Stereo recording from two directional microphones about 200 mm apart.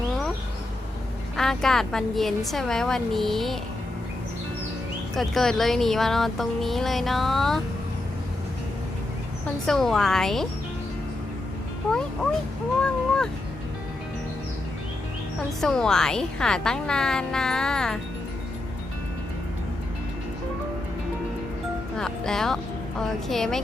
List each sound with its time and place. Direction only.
1.4 s speech: centre (ahead or behind)
5.1 s speech: centre (ahead or behind)
9.6 s speech: centre (ahead or behind)
11.9 s speech: 5° left (ahead or behind)
15.6 s speech: 5° left (ahead or behind)
21.9 s speech: centre (ahead or behind)